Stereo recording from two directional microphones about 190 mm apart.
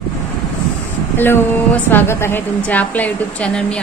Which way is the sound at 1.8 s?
10° left (ahead or behind).